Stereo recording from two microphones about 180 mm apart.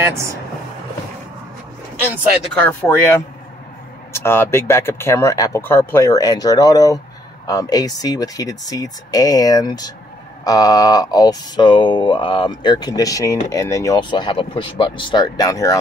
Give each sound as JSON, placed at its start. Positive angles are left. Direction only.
{"t": 0.0, "sound": "speech", "side_deg": -15}
{"t": 2.5, "sound": "speech", "side_deg": 10}